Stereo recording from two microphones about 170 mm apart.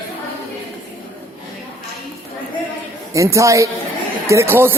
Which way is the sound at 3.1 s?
20° right (ahead or behind).